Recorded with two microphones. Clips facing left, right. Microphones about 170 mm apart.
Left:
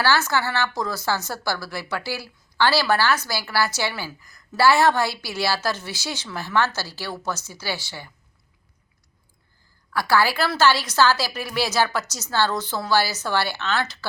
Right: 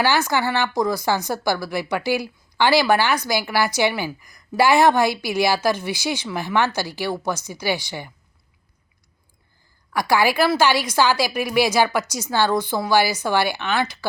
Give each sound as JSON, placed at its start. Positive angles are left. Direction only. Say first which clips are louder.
{"t": 0.0, "sound": "a woman's voice", "louder": "right 2 dB", "side_deg": -15}
{"t": 9.9, "sound": "a woman's voice", "louder": "right 2 dB", "side_deg": -15}